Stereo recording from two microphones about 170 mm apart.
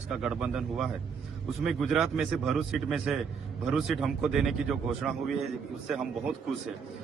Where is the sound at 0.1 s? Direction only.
5° right (ahead or behind).